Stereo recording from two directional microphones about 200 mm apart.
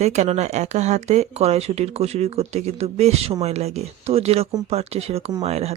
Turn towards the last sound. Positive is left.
turn(degrees=-30)  # may be behind; listen again after turning